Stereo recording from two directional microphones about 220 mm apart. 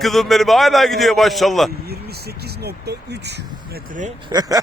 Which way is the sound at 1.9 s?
45° right (ahead or behind).